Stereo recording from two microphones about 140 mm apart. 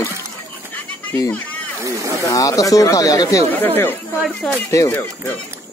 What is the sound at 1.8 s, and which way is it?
Snake, 25° right (ahead or behind).